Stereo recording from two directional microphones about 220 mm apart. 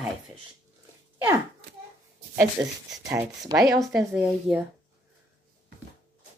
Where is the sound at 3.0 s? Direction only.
15° right (ahead or behind).